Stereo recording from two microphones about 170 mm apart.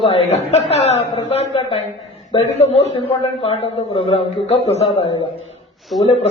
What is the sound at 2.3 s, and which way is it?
A man's voice, 35° left (ahead or behind).